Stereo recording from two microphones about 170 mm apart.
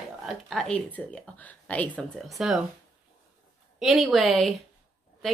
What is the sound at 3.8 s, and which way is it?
Speech, centre (ahead or behind).